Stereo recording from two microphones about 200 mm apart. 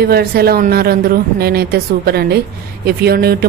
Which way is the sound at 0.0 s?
50° right (ahead or behind).